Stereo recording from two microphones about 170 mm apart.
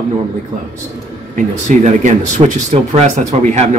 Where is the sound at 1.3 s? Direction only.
45° right (ahead or behind).